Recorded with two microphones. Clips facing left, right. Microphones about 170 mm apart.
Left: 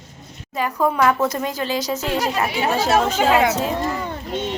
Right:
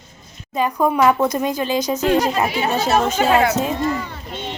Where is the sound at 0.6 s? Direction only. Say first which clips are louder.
Right 2 dB; 20° right (ahead or behind).